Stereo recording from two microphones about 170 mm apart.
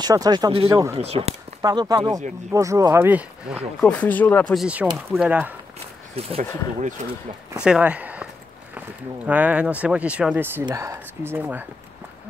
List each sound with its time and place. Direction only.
0.0 s speech: 25° right (ahead or behind)
0.7 s speech: 20° right (ahead or behind)
0.9 s speech: 35° right (ahead or behind)
1.6 s speech: 20° right (ahead or behind)
3.8 s speech: 10° left (ahead or behind)
4.6 s speech: 5° right (ahead or behind)
6.2 s speech: 35° right (ahead or behind)
7.5 s speech: 5° right (ahead or behind)